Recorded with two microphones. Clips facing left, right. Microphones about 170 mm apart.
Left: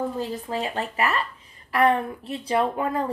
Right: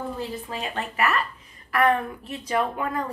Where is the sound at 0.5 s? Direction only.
30° left (ahead or behind).